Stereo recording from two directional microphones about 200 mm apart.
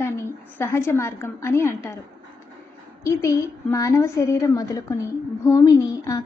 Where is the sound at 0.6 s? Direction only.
15° left (ahead or behind).